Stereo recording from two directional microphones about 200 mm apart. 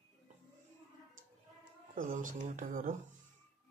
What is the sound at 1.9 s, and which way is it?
A man's voice, 45° right (ahead or behind).